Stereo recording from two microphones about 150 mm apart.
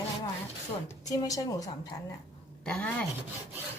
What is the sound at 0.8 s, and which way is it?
A woman's voice, 25° left (ahead or behind).